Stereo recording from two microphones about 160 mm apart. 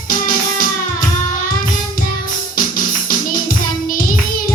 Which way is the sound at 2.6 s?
60° left (ahead or behind).